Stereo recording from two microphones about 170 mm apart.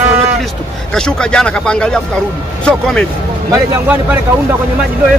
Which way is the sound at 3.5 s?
10° right (ahead or behind).